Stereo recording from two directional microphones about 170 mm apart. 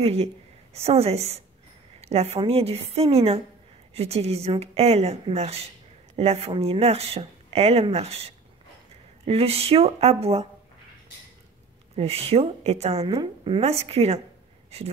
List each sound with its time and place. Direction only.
0.0 s speech: 35° right (ahead or behind)
12.0 s speech: 35° right (ahead or behind)
13.0 s speech: 20° right (ahead or behind); by 14.2 s 40° right (ahead or behind)